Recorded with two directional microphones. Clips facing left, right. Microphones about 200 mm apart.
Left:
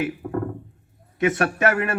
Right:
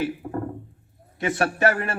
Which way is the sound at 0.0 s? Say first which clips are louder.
Left 1 dB; 30° right (ahead or behind).